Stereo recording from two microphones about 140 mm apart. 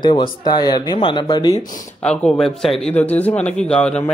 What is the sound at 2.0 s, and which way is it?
A man's voice, 5° left (ahead or behind).